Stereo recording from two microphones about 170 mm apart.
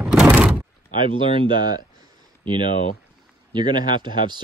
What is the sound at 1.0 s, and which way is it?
Speech, 30° right (ahead or behind).